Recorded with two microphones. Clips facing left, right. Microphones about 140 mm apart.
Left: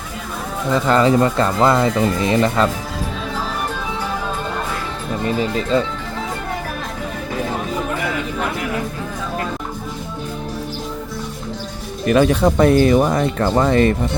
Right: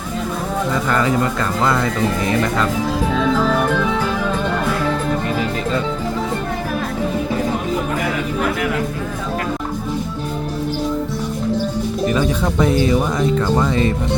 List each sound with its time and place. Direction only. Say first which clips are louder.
0.9 s speech: left 6 dB; 30° left (ahead or behind)
3.5 s music: right 8 dB; 90° right
12.0 s speech: left 6 dB; 70° left (ahead or behind)